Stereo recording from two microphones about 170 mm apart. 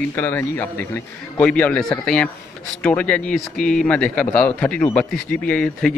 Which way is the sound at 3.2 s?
50° left (ahead or behind).